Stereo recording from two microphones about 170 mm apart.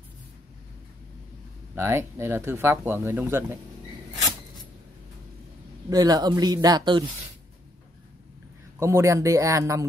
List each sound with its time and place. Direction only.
1.8 s speech: 15° right (ahead or behind)
5.9 s speech: 20° right (ahead or behind)
8.7 s speech: 15° right (ahead or behind)